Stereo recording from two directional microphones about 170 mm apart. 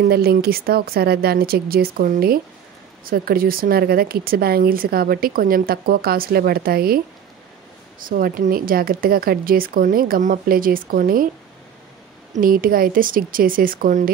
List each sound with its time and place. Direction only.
0.1 s speech: 65° right (ahead or behind)
8.0 s speech: 55° right (ahead or behind)
12.4 s speech: 55° right (ahead or behind)